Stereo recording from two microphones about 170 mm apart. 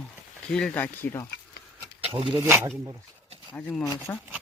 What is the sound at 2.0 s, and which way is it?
Speech, 30° right (ahead or behind).